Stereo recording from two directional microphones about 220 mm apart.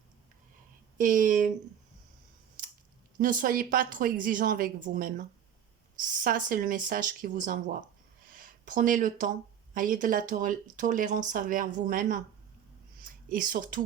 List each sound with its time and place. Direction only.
0.9 s speech: 35° right (ahead or behind)
3.2 s speech: 35° right (ahead or behind)